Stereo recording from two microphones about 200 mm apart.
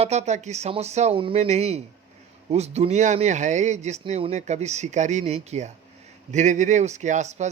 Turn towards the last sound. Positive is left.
turn(degrees=-35)  # may be behind; listen again after turning